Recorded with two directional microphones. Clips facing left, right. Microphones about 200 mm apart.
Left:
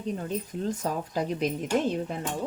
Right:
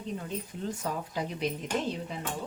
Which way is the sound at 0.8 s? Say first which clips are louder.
Left 4 dB; 40° left (ahead or behind).